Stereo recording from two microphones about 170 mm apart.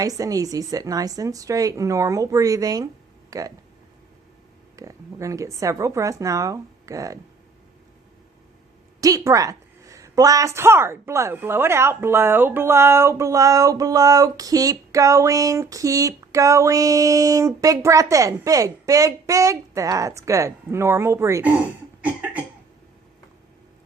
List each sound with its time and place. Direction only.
0.0 s a woman's voice: 20° right (ahead or behind)
4.8 s a woman's voice: 20° right (ahead or behind)
9.0 s a woman's voice: 20° right (ahead or behind)
22.0 s cough: 10° right (ahead or behind)